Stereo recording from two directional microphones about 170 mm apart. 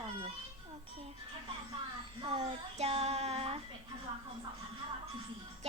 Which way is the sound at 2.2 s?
35° right (ahead or behind).